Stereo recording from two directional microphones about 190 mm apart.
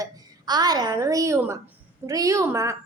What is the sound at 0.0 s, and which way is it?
A child's voice, 20° right (ahead or behind).